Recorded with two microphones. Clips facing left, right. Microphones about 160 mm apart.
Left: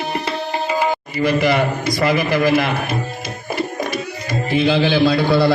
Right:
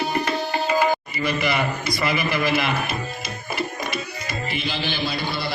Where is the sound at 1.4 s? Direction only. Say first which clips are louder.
Left 6 dB; 35° left (ahead or behind).